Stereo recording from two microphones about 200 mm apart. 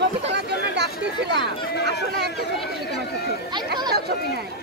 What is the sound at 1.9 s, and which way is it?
Run, 55° right (ahead or behind).